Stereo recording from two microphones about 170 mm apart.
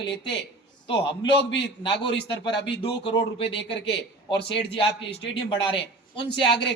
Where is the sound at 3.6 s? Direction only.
90° left.